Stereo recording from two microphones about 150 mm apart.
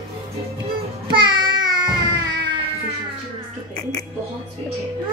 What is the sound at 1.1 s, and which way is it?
Music, 30° right (ahead or behind).